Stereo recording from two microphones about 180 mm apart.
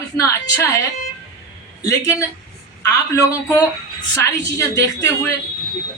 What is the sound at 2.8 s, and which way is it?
A woman's voice, 20° left (ahead or behind).